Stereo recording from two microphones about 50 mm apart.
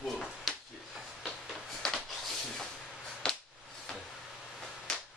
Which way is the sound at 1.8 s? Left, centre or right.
Centre.